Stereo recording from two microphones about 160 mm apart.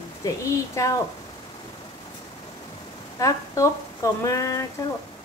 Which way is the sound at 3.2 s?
20° left (ahead or behind).